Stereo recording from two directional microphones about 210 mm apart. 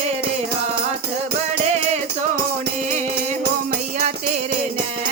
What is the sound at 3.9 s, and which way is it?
Music, 35° right (ahead or behind).